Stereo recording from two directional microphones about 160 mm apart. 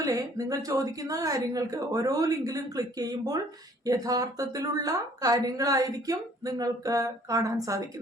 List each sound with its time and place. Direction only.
0.0 s a woman's voice: 20° right (ahead or behind)